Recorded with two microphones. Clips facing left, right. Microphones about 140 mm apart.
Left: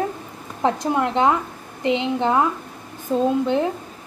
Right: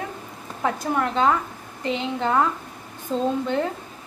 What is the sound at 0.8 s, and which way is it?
A woman's voice, 20° left (ahead or behind).